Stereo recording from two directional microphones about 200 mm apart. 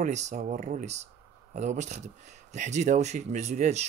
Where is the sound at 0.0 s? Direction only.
35° right (ahead or behind).